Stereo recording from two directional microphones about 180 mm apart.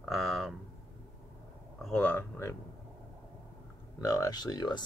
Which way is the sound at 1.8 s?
5° left (ahead or behind).